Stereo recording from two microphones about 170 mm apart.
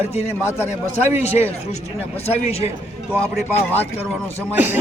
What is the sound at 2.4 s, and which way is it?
Speech, 40° left (ahead or behind).